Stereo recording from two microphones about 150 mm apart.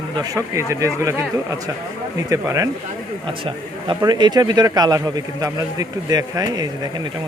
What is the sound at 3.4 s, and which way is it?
A man's voice, 30° right (ahead or behind).